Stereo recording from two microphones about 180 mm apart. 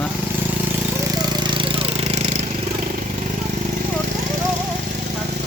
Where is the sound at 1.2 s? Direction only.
25° right (ahead or behind).